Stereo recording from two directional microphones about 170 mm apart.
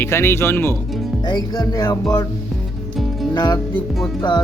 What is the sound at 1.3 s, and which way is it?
Music, 25° left (ahead or behind).